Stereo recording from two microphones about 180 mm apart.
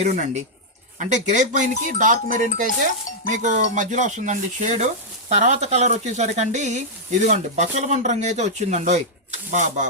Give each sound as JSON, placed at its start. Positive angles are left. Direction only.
{"t": 0.0, "sound": "speech", "side_deg": -40}